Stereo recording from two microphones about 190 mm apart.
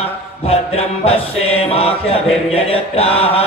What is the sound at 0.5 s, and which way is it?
Music, 30° left (ahead or behind).